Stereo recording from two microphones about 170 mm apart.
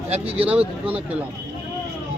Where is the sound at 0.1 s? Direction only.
35° right (ahead or behind).